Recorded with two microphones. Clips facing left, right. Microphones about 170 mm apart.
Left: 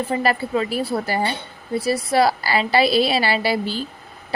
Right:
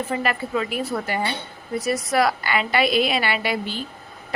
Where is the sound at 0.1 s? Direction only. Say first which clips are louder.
Left 5 dB; 35° left (ahead or behind).